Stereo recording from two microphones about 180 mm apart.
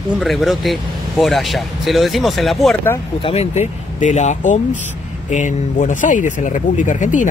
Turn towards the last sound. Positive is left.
turn(degrees=45)  # may be behind; listen again after turning